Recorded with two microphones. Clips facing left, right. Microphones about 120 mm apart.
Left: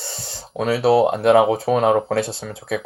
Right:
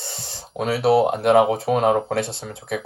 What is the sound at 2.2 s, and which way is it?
Speech, 20° right (ahead or behind).